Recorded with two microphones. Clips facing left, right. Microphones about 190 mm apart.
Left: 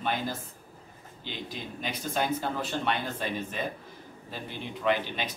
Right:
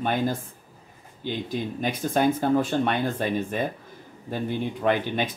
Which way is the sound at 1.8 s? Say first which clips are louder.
Right 8 dB; 50° right (ahead or behind).